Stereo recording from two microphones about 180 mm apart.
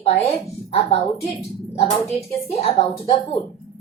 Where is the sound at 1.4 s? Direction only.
35° left (ahead or behind).